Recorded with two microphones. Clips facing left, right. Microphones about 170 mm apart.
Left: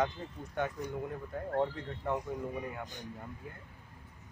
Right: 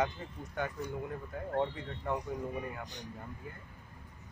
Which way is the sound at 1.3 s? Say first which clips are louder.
Left 1 dB; centre (ahead or behind).